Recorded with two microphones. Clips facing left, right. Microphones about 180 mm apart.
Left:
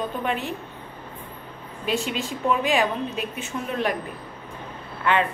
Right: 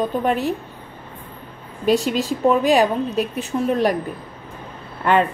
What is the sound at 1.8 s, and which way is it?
A woman's voice, 40° right (ahead or behind).